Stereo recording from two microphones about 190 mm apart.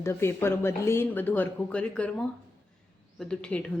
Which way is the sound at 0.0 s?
15° left (ahead or behind).